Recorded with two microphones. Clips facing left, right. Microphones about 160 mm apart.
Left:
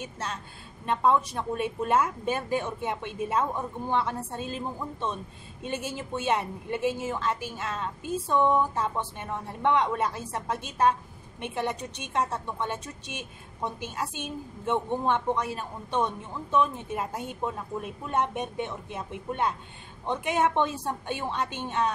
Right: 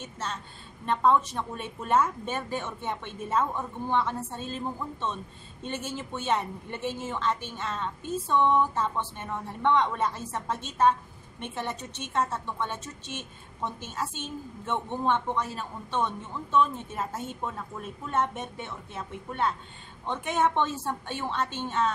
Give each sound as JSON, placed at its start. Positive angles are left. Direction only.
{"t": 0.0, "sound": "a woman's voice", "side_deg": 10}